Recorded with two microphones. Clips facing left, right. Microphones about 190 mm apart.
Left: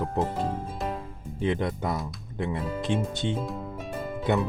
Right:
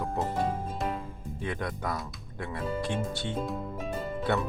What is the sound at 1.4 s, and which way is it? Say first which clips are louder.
Speech: left 7 dB; 25° left (ahead or behind).